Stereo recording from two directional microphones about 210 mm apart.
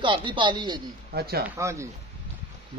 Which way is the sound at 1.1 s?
50° right (ahead or behind).